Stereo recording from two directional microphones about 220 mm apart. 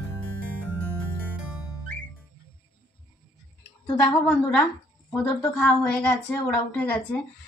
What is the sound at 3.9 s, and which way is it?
Speech, 5° left (ahead or behind).